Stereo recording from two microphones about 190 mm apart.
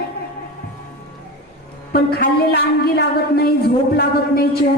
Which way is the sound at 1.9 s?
55° left (ahead or behind).